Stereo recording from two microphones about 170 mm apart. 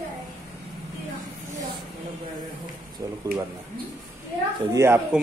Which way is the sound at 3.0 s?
20° right (ahead or behind).